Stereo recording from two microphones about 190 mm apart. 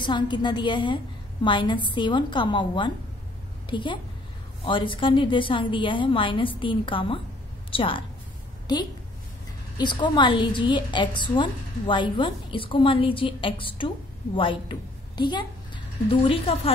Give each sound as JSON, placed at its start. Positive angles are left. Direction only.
{"t": 0.0, "sound": "a woman's voice", "side_deg": 25}